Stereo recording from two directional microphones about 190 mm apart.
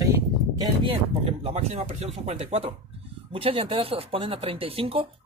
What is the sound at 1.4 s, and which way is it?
Speech, 35° right (ahead or behind).